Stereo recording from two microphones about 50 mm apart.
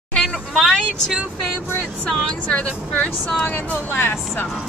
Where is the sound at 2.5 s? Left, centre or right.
Left.